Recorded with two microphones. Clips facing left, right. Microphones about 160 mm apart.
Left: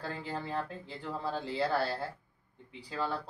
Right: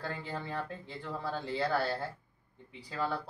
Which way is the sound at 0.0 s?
30° left (ahead or behind).